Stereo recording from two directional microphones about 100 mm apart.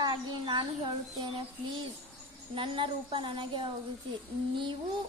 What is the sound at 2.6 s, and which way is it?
Speech, 55° right (ahead or behind).